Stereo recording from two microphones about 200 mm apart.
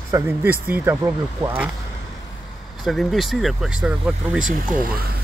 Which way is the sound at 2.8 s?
Centre (ahead or behind).